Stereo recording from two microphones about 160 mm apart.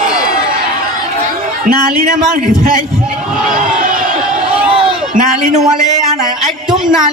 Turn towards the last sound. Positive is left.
turn(degrees=-5)  # may be behind; listen again after turning